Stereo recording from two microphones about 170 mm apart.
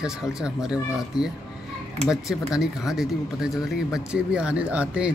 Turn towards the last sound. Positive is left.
turn(degrees=-5)  # may be behind; listen again after turning